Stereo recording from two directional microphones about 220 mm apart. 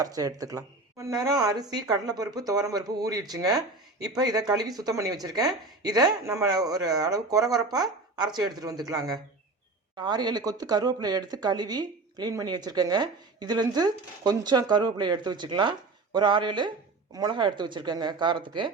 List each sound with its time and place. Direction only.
0.0 s speech: 15° right (ahead or behind)